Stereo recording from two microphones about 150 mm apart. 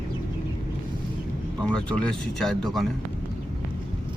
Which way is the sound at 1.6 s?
5° left (ahead or behind).